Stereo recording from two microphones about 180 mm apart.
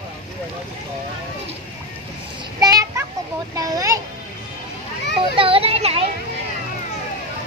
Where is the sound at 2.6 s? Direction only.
20° right (ahead or behind).